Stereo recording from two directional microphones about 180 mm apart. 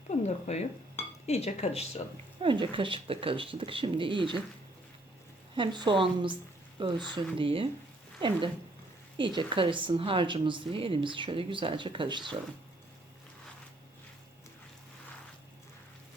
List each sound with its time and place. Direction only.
0.1 s speech: 40° left (ahead or behind)
2.4 s a woman's voice: 30° right (ahead or behind)
5.5 s a woman's voice: 25° right (ahead or behind)